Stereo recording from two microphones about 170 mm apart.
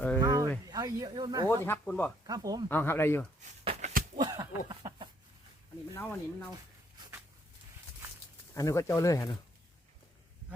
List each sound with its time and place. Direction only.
0.2 s a sound: 20° right (ahead or behind)
0.6 s speech: 20° right (ahead or behind)
1.6 s speech: 10° left (ahead or behind)
2.2 s speech: 20° right (ahead or behind)
2.6 s speech: 10° left (ahead or behind)
3.6 s a sound: 40° right (ahead or behind)
4.2 s a sound: 25° right (ahead or behind)
5.9 s speech: 10° left (ahead or behind)
8.5 s speech: 20° left (ahead or behind)